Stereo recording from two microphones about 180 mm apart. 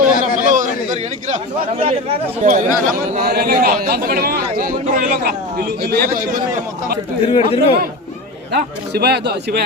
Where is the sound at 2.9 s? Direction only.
55° right (ahead or behind).